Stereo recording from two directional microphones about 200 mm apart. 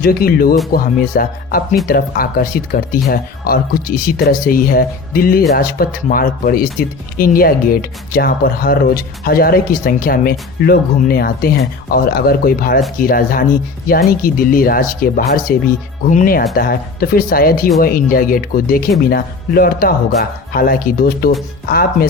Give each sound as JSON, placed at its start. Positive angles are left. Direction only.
{"t": 0.0, "sound": "speech", "side_deg": 45}